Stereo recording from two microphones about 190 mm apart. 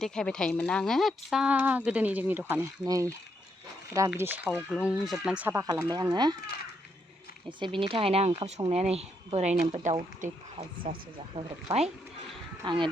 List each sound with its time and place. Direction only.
0.0 s speech: 5° left (ahead or behind); by 6.3 s 20° right (ahead or behind)
7.6 s a woman's voice: 25° right (ahead or behind)
11.3 s a woman's voice: 35° right (ahead or behind)